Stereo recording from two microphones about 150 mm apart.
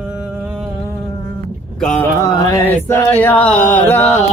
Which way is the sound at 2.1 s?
20° left (ahead or behind).